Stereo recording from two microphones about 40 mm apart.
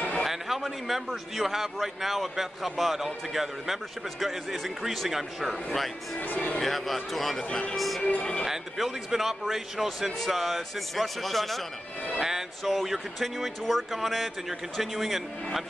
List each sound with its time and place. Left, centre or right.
0.2 s a man's voice: centre
6.2 s speech: left
6.6 s a man's voice: centre
8.1 s speech: left
8.5 s a man's voice: centre
12.2 s music: centre
12.6 s a man's voice: centre